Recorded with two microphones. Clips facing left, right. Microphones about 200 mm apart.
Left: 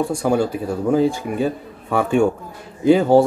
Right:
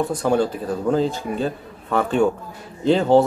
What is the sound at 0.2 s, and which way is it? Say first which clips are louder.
Speech: left 1 dB; 10° left (ahead or behind).